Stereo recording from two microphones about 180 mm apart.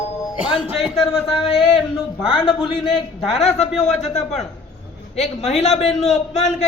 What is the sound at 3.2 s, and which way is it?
A woman's voice, 35° left (ahead or behind).